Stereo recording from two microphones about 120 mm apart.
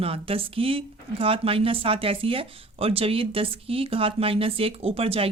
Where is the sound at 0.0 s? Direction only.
50° right (ahead or behind).